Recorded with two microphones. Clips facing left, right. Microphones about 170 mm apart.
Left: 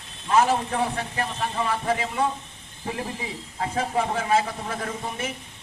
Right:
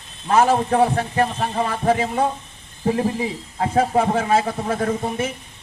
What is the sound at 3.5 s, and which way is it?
A man's voice, 40° right (ahead or behind).